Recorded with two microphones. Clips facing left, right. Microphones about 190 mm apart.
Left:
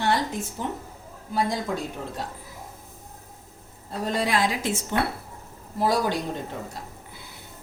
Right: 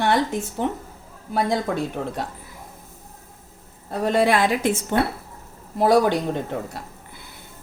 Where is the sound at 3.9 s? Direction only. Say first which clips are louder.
Right 6 dB; 60° right (ahead or behind).